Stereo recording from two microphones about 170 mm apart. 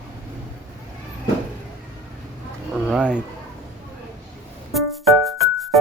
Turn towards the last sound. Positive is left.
turn(degrees=0)  # may be behind; listen again after turning